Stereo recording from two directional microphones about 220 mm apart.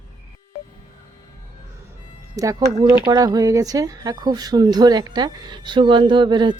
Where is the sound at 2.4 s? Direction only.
15° right (ahead or behind).